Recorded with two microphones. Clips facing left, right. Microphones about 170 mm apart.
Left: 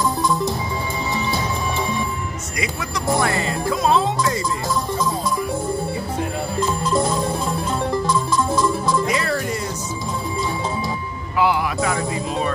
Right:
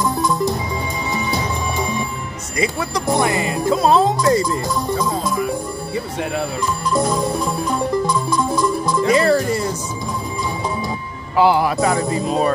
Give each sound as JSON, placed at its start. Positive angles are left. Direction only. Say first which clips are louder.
{"t": 2.6, "sound": "music", "louder": "right 6 dB", "side_deg": -30}
{"t": 3.2, "sound": "music", "louder": "right 3 dB", "side_deg": -15}
{"t": 3.7, "sound": "music", "louder": "right 4 dB", "side_deg": -35}
{"t": 9.1, "sound": "music", "louder": "right 8 dB", "side_deg": -35}
{"t": 11.3, "sound": "music", "louder": "right 5 dB", "side_deg": -30}